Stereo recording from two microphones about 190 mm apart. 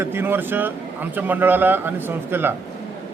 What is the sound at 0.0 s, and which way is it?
Speech, 10° right (ahead or behind).